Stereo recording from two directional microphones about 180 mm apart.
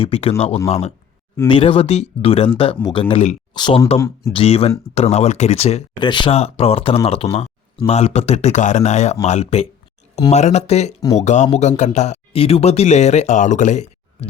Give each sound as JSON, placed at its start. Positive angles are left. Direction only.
{"t": 0.0, "sound": "speech", "side_deg": 35}
{"t": 3.5, "sound": "speech", "side_deg": 25}
{"t": 6.0, "sound": "speech", "side_deg": 25}